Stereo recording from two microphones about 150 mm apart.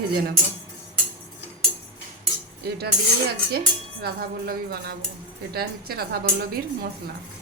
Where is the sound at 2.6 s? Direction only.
90° right.